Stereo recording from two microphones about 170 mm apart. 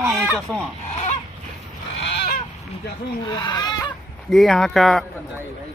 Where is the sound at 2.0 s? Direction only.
85° left.